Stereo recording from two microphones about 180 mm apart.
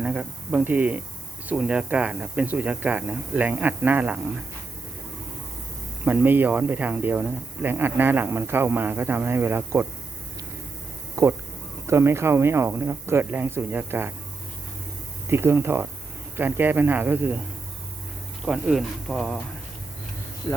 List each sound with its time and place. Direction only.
0.0 s speech: 5° right (ahead or behind)
6.1 s speech: 10° right (ahead or behind)
11.2 s speech: 15° right (ahead or behind)
15.3 s speech: 15° right (ahead or behind)
18.4 s speech: 5° right (ahead or behind)